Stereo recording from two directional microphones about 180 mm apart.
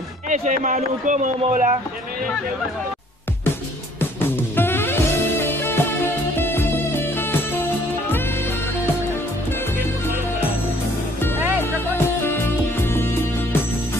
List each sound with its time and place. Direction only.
0.3 s a man's voice: 45° right (ahead or behind)
4.0 s music: 10° left (ahead or behind)
11.6 s music: 10° left (ahead or behind)